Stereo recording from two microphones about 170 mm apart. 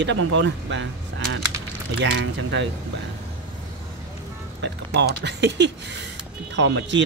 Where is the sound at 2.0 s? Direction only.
90° right.